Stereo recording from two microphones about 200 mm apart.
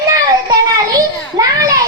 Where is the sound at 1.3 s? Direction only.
20° right (ahead or behind).